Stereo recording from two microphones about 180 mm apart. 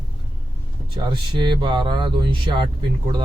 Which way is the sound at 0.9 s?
25° right (ahead or behind).